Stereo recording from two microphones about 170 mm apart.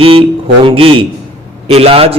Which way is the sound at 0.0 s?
35° right (ahead or behind).